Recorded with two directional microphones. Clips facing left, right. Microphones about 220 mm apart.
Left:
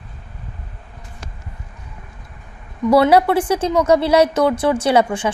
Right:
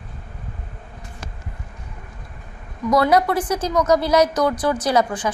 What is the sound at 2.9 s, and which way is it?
A woman's voice, 30° left (ahead or behind).